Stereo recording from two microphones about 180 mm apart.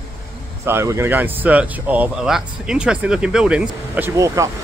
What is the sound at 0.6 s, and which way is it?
Speech, 15° right (ahead or behind).